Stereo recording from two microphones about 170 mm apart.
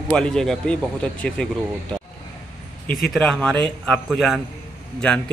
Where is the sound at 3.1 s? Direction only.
5° left (ahead or behind).